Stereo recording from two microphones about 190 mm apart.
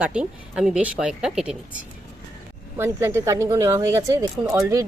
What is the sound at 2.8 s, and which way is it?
Speech, 15° right (ahead or behind).